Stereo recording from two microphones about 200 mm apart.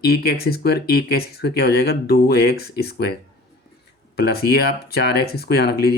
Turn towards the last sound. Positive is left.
turn(degrees=50)  # may be behind; listen again after turning